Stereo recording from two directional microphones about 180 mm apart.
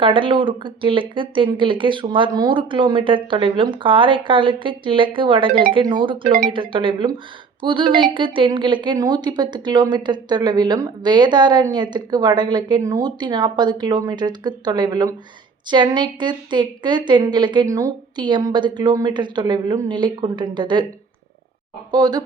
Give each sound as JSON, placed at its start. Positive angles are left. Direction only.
{"t": 0.0, "sound": "a woman's voice", "side_deg": -30}
{"t": 21.9, "sound": "a woman's voice", "side_deg": -25}